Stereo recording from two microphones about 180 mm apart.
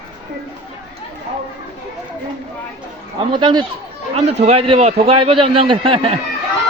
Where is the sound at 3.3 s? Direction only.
25° right (ahead or behind).